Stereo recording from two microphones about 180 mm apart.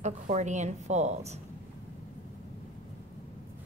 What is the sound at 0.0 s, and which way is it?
A woman's voice, 40° right (ahead or behind).